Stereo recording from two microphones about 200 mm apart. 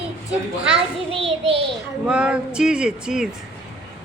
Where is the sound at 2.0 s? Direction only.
5° right (ahead or behind).